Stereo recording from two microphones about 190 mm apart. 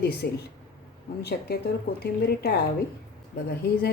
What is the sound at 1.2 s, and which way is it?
A woman's voice, 60° left (ahead or behind).